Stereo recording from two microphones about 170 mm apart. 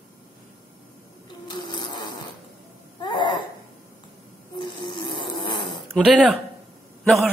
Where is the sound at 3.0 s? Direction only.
25° left (ahead or behind).